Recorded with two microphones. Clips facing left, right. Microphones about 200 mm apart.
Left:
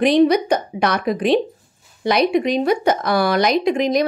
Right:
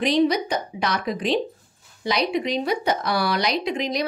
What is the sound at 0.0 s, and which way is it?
A woman's voice, 55° left (ahead or behind).